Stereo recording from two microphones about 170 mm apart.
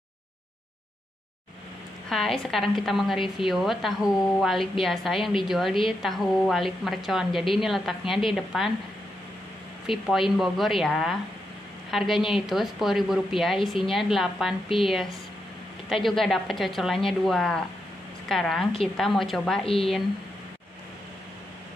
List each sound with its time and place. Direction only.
2.0 s a woman's voice: centre (ahead or behind)
9.8 s a woman's voice: centre (ahead or behind)
19.6 s speech: 35° left (ahead or behind)